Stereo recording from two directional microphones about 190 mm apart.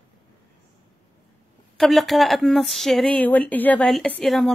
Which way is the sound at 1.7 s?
Centre (ahead or behind).